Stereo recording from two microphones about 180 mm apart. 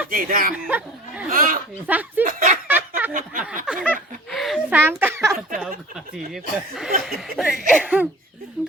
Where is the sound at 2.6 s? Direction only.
10° right (ahead or behind).